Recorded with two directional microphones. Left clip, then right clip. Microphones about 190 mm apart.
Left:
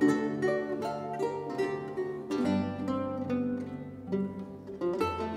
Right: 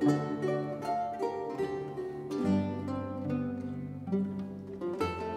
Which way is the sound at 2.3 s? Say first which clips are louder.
Left 1 dB; 35° left (ahead or behind).